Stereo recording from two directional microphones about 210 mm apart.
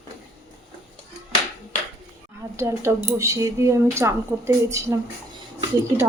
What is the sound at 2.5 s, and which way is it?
Speech, 15° right (ahead or behind).